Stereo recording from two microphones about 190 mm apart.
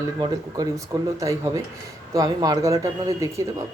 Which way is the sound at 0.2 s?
20° right (ahead or behind).